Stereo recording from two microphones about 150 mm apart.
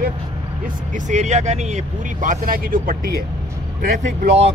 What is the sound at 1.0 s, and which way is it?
Speech, 50° right (ahead or behind).